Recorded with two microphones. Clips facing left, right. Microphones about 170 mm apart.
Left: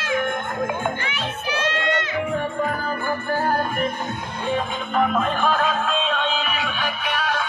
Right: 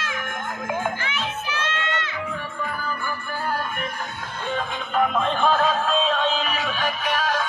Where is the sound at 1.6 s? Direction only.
40° left (ahead or behind).